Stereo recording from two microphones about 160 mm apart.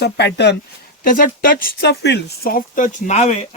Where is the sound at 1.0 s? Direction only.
60° left (ahead or behind).